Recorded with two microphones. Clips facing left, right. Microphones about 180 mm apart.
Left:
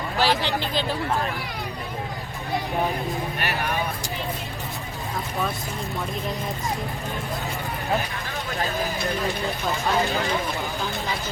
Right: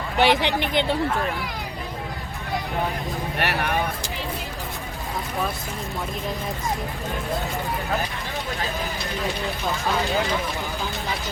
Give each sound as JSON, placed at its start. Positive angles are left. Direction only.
{"t": 0.2, "sound": "speech", "side_deg": -20}
{"t": 3.3, "sound": "speech", "side_deg": -70}